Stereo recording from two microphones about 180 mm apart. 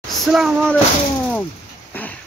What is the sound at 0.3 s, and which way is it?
Speech, centre (ahead or behind).